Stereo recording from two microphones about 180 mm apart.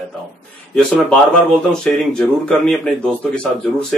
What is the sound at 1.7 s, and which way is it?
Speech, 5° left (ahead or behind).